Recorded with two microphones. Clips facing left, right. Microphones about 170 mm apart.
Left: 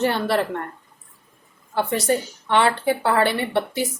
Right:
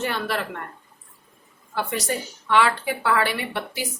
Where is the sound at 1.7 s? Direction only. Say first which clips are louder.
Left 5 dB; 30° left (ahead or behind).